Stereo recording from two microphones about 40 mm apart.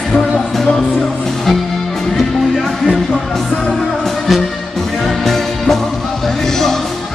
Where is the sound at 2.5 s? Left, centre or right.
Centre.